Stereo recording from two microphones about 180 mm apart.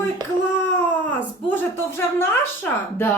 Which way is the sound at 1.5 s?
10° left (ahead or behind).